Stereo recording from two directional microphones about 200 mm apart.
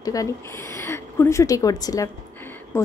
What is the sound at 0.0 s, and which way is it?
A woman's voice, 15° left (ahead or behind).